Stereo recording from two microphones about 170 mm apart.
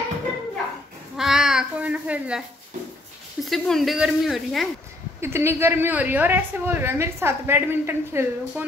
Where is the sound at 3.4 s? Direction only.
Centre (ahead or behind).